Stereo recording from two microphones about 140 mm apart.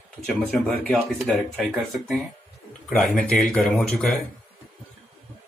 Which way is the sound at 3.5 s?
Centre (ahead or behind).